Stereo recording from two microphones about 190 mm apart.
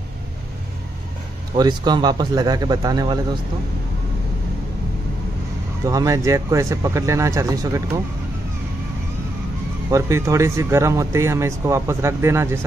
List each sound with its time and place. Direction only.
1.6 s speech: 20° right (ahead or behind)
5.9 s speech: 15° right (ahead or behind)
9.8 s speech: 15° right (ahead or behind)